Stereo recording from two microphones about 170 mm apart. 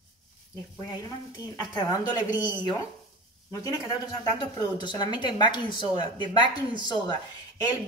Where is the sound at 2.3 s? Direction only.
10° right (ahead or behind).